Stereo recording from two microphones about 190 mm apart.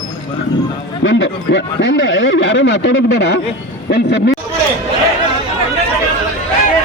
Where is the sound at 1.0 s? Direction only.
70° left (ahead or behind).